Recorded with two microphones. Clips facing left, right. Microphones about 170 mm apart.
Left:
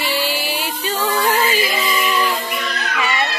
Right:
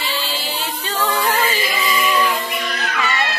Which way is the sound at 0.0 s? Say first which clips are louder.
Left 4 dB; 15° left (ahead or behind).